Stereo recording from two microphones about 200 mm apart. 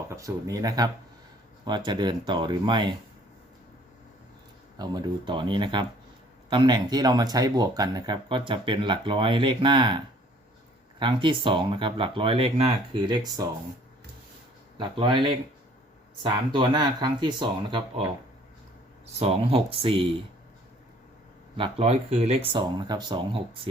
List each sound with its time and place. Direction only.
0.1 s speech: 15° right (ahead or behind)
4.8 s speech: 20° right (ahead or behind)
11.0 s speech: 25° right (ahead or behind)
14.8 s speech: 25° right (ahead or behind)
19.2 s speech: 30° right (ahead or behind)
21.5 s speech: 30° right (ahead or behind)